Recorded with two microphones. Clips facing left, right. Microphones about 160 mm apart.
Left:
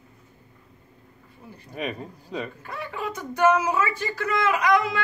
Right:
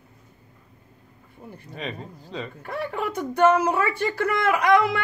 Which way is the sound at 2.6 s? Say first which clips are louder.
Right 5 dB; 55° right (ahead or behind).